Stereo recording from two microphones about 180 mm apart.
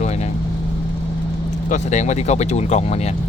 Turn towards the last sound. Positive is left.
turn(degrees=35)  # may be behind; listen again after turning